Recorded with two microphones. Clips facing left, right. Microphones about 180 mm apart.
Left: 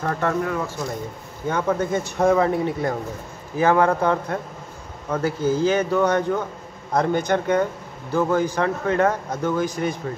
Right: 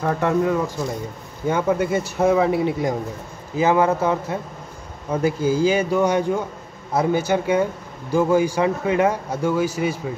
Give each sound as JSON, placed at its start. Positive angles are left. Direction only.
{"t": 0.0, "sound": "speech", "side_deg": -15}